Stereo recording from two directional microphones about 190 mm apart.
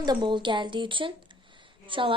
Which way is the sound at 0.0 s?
25° right (ahead or behind).